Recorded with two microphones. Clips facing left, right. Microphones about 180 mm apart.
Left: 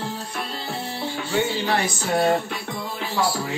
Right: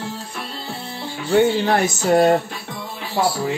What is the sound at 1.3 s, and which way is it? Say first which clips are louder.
Speech: right 8 dB; 50° right (ahead or behind).